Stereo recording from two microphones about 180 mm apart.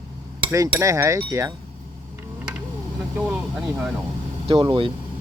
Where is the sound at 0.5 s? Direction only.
15° right (ahead or behind).